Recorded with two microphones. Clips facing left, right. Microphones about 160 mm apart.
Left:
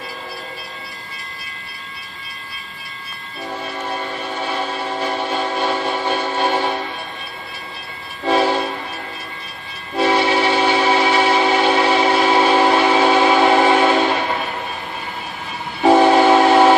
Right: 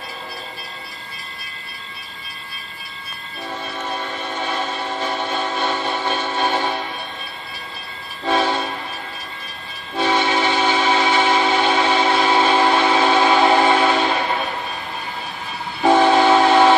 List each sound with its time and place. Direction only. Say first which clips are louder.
3.6 s train: left 1 dB; 10° left (ahead or behind)
8.3 s train: left 3 dB; 10° left (ahead or behind)
9.9 s train: left 3 dB; 10° left (ahead or behind)
15.8 s train: left 2 dB; 10° left (ahead or behind)